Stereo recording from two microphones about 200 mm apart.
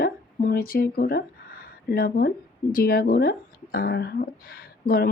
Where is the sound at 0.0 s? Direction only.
45° left (ahead or behind).